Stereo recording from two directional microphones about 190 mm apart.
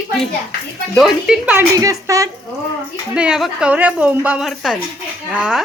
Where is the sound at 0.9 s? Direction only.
Centre (ahead or behind); by 2.3 s 15° right (ahead or behind).